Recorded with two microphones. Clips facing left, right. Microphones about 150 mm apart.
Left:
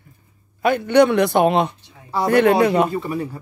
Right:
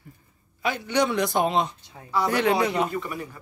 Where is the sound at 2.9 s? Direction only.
35° left (ahead or behind).